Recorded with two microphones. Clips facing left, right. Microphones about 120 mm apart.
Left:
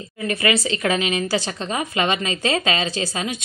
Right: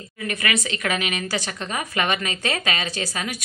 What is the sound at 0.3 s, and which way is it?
A woman's voice, 30° left (ahead or behind).